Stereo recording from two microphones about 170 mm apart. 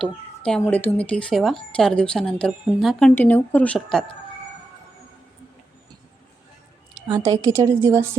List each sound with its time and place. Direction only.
0.0 s a woman's voice: 5° left (ahead or behind)
7.1 s a woman's voice: 20° right (ahead or behind)